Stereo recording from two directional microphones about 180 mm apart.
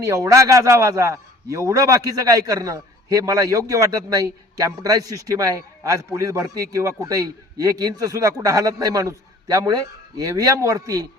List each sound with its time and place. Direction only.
0.0 s a man's voice: 20° right (ahead or behind)